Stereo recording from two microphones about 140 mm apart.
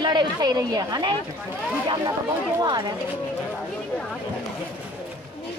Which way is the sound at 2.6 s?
30° right (ahead or behind).